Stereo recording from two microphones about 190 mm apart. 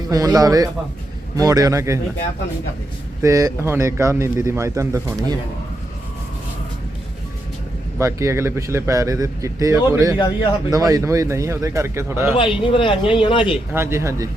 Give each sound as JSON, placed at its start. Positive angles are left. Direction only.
{"t": 0.1, "sound": "a man's voice", "side_deg": -20}
{"t": 3.2, "sound": "speech", "side_deg": -15}
{"t": 7.9, "sound": "speech", "side_deg": -15}
{"t": 12.3, "sound": "speech", "side_deg": 25}
{"t": 13.7, "sound": "speech", "side_deg": -15}